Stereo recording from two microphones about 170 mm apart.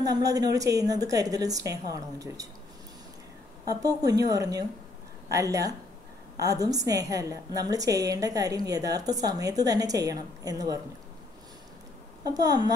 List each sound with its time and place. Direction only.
0.0 s a woman's voice: 20° right (ahead or behind)
3.6 s a woman's voice: 20° right (ahead or behind)
12.3 s a woman's voice: 20° right (ahead or behind)